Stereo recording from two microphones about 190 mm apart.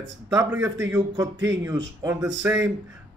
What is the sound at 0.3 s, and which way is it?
Speech, 15° right (ahead or behind).